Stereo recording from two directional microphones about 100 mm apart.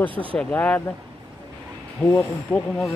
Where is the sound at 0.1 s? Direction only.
60° right (ahead or behind).